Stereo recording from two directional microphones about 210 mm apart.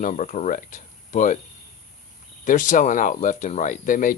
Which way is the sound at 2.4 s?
40° left (ahead or behind).